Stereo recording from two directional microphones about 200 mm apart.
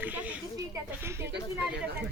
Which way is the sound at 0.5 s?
15° right (ahead or behind).